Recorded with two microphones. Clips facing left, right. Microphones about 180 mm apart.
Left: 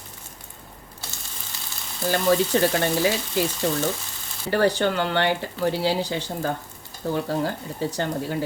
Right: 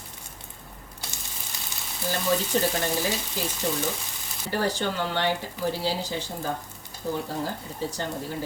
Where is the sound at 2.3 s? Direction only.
65° left (ahead or behind).